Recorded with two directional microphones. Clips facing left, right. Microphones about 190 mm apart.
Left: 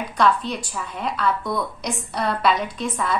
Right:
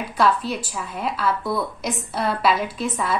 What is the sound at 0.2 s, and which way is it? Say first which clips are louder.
A woman's voice: even; 5° right (ahead or behind).